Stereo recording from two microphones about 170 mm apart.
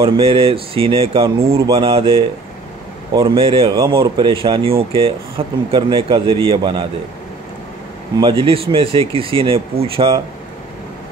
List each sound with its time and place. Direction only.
0.0 s speech: 35° right (ahead or behind)
3.7 s speech: 20° right (ahead or behind)
4.2 s a man's voice: 30° right (ahead or behind)
8.2 s speech: 30° right (ahead or behind)